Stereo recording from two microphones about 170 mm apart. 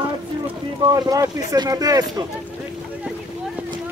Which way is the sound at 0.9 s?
20° right (ahead or behind).